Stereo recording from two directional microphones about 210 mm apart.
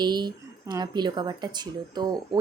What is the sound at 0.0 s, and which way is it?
A woman's voice, 20° right (ahead or behind).